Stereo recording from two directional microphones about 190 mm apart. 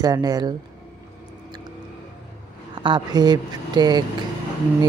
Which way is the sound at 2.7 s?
25° right (ahead or behind).